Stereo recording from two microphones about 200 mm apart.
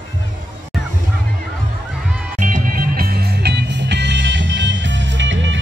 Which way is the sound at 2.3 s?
40° right (ahead or behind).